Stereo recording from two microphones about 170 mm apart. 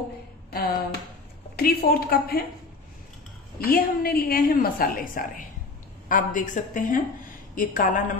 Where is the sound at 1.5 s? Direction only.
65° left (ahead or behind).